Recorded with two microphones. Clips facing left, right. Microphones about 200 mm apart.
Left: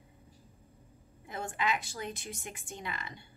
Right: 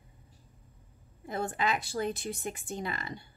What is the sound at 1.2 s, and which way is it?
A woman's voice, 35° right (ahead or behind).